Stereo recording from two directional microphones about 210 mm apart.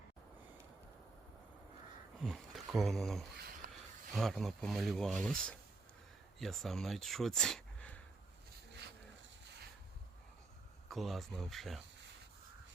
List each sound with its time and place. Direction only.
2.2 s speech: centre (ahead or behind)
3.3 s a sound: 50° right (ahead or behind)
4.1 s speech: centre (ahead or behind)
10.8 s speech: centre (ahead or behind)